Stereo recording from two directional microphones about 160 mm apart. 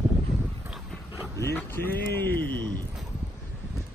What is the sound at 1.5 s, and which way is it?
A man's voice, 15° left (ahead or behind).